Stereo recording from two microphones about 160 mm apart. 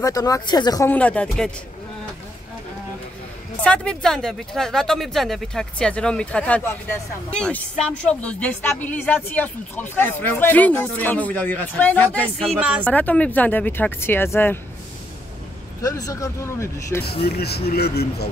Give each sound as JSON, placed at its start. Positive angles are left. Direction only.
{"t": 0.0, "sound": "speech", "side_deg": 20}
{"t": 0.8, "sound": "a woman's voice", "side_deg": 10}
{"t": 3.6, "sound": "a woman's voice", "side_deg": 5}
{"t": 12.5, "sound": "speech", "side_deg": -10}
{"t": 12.8, "sound": "a woman's voice", "side_deg": 10}
{"t": 15.8, "sound": "speech", "side_deg": 20}
{"t": 17.2, "sound": "speech", "side_deg": 85}